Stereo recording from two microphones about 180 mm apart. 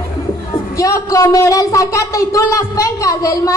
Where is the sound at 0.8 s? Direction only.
20° left (ahead or behind).